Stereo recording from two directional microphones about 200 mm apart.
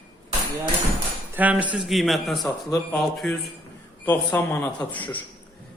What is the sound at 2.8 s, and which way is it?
Speech, 15° left (ahead or behind).